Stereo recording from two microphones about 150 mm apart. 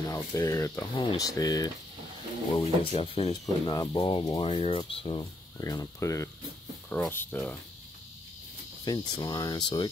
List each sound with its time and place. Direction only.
0.1 s speech: 25° left (ahead or behind)
2.6 s speech: 40° left (ahead or behind)
3.6 s speech: 30° left (ahead or behind)
5.6 s speech: 20° left (ahead or behind)
8.8 s speech: 30° left (ahead or behind)